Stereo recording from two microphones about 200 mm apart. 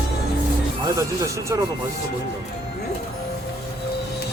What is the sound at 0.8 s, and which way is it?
Speech, 15° right (ahead or behind).